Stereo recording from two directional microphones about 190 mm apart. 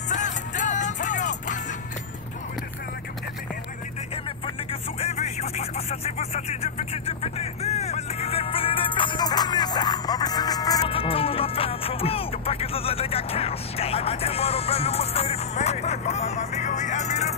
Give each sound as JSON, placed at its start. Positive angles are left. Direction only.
{"t": 0.1, "sound": "music", "side_deg": 40}
{"t": 5.0, "sound": "vehicle", "side_deg": 35}